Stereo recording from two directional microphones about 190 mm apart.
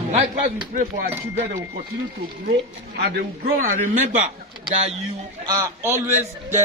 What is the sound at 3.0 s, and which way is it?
A man's voice, 50° right (ahead or behind).